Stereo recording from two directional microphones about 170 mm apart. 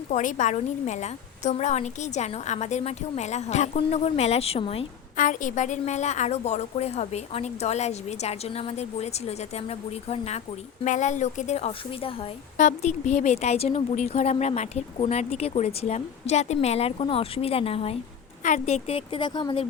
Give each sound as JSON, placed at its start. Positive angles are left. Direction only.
{"t": 0.1, "sound": "a woman's voice", "side_deg": 50}
{"t": 5.1, "sound": "a woman's voice", "side_deg": 50}
{"t": 18.4, "sound": "a woman's voice", "side_deg": 45}